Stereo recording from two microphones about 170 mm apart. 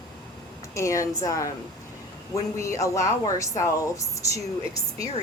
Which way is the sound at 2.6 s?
20° left (ahead or behind).